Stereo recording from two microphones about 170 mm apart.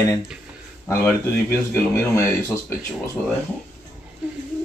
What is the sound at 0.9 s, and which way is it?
A man's voice, 15° left (ahead or behind).